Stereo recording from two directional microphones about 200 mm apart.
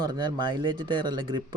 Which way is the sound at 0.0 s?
20° right (ahead or behind).